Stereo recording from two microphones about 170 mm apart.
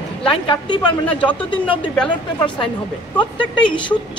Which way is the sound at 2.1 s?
30° left (ahead or behind).